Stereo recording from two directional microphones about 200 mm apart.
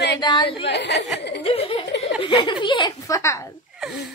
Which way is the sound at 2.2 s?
25° left (ahead or behind).